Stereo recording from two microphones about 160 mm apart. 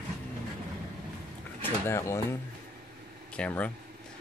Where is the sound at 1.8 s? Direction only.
15° left (ahead or behind).